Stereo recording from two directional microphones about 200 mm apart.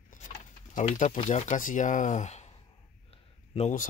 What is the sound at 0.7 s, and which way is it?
Speech, 40° left (ahead or behind).